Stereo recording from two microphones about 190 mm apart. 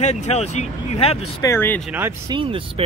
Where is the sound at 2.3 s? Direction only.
25° right (ahead or behind).